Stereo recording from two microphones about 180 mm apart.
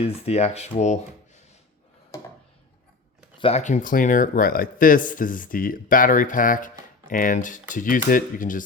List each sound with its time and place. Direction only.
0.0 s speech: 35° left (ahead or behind)
3.3 s speech: 35° left (ahead or behind)